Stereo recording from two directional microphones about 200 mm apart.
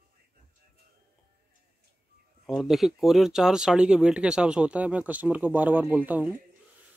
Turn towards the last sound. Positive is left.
turn(degrees=-10)  # may be behind; listen again after turning